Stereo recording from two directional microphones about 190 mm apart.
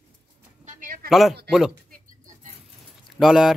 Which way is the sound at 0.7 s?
45° right (ahead or behind).